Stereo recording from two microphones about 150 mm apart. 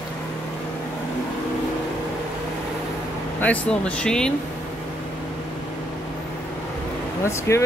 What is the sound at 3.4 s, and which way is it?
Speech, 10° left (ahead or behind).